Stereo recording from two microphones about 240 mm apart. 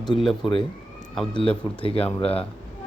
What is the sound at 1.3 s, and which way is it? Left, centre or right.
Speech, left.